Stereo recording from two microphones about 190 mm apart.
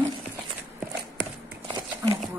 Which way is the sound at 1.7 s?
20° right (ahead or behind).